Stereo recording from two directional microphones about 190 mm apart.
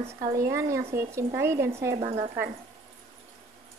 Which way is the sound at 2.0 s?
30° right (ahead or behind).